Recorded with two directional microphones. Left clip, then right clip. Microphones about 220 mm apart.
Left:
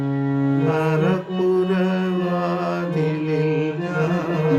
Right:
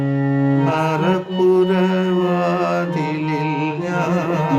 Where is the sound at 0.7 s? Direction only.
20° right (ahead or behind).